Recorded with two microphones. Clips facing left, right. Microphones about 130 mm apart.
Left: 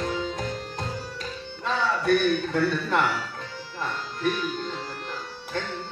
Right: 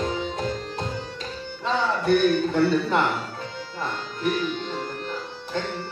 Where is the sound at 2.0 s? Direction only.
25° right (ahead or behind).